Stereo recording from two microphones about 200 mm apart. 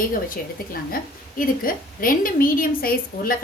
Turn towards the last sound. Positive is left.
turn(degrees=45)  # may be behind; listen again after turning